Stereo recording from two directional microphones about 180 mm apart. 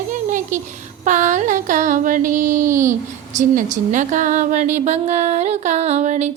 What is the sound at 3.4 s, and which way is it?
Speech, 45° right (ahead or behind).